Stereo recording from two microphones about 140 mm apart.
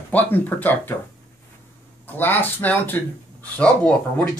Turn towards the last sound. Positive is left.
turn(degrees=5)  # may be behind; listen again after turning